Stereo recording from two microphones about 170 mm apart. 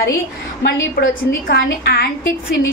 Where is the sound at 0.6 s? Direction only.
65° left (ahead or behind).